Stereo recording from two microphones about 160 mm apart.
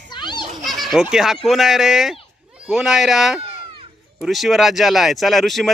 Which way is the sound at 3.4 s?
35° right (ahead or behind).